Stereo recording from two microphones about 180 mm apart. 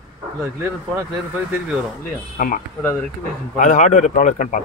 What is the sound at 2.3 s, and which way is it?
Speech, 50° left (ahead or behind).